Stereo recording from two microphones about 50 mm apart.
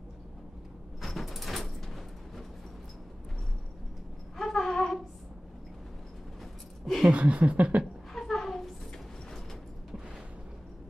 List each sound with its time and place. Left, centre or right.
1.0 s music: centre
4.4 s wind instrument: centre
7.1 s speech: right
8.1 s a sound: centre